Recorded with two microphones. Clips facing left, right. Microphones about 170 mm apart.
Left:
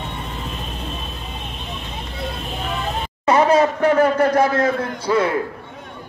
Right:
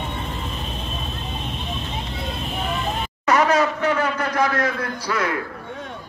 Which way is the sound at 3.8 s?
45° left (ahead or behind).